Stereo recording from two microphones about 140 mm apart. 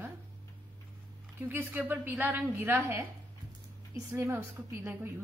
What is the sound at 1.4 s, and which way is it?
A woman's voice, 15° right (ahead or behind).